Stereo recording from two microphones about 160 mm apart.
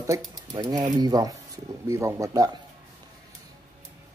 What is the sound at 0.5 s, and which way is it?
Speech, 25° right (ahead or behind).